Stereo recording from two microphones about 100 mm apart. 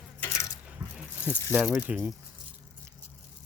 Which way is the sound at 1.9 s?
10° right (ahead or behind).